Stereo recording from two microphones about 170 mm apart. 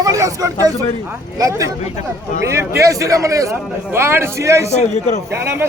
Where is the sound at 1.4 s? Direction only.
20° right (ahead or behind).